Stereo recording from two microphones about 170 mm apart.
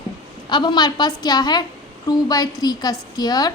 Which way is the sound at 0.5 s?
25° left (ahead or behind).